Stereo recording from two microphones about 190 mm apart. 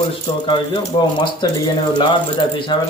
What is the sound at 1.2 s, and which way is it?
Speech, 25° left (ahead or behind).